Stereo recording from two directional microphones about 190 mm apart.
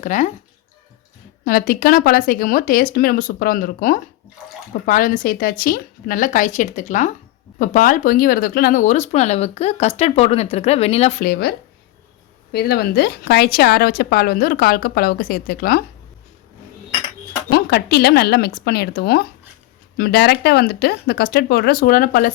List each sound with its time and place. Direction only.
0.0 s speech: 40° left (ahead or behind)
1.5 s speech: 50° left (ahead or behind); by 11.1 s 30° left (ahead or behind)
11.2 s speech: 55° left (ahead or behind)
17.5 s speech: 60° left (ahead or behind)